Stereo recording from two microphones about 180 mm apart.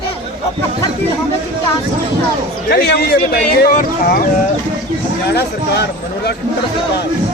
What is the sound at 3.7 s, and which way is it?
Speech, 50° left (ahead or behind).